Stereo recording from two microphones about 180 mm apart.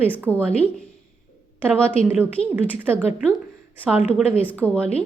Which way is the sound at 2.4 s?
35° left (ahead or behind).